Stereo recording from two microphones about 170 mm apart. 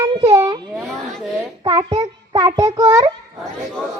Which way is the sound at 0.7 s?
Centre (ahead or behind).